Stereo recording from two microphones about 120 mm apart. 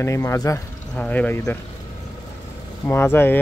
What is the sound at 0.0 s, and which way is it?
Speech, 25° left (ahead or behind).